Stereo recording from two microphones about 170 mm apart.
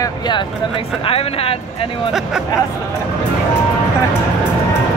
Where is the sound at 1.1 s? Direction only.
35° left (ahead or behind).